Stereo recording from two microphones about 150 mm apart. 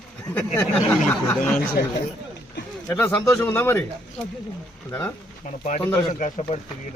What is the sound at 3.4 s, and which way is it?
Speech, 15° left (ahead or behind).